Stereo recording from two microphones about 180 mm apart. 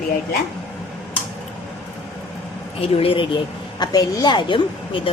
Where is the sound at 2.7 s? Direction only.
30° left (ahead or behind).